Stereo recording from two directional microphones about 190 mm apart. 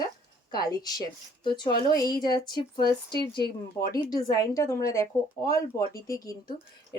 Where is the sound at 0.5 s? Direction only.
20° left (ahead or behind).